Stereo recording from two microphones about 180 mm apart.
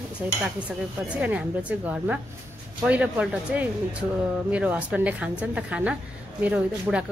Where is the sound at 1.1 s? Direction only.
5° right (ahead or behind).